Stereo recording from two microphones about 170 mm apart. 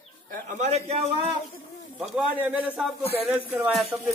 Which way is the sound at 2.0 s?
5° right (ahead or behind).